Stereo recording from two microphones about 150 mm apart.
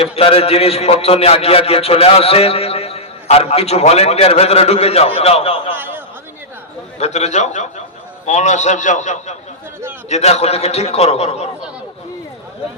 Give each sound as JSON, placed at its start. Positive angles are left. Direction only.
{"t": 0.0, "sound": "a man's voice", "side_deg": 40}
{"t": 5.7, "sound": "a sound", "side_deg": -15}
{"t": 7.0, "sound": "a man's voice", "side_deg": 50}